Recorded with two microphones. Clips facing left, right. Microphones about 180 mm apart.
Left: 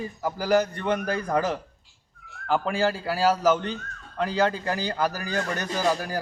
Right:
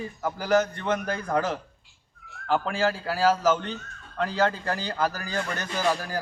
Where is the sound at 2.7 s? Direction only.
15° left (ahead or behind).